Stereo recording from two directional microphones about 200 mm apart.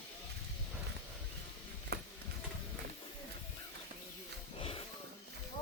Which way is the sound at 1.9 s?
55° right (ahead or behind).